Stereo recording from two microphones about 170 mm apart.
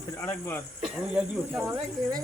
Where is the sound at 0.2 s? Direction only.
15° left (ahead or behind).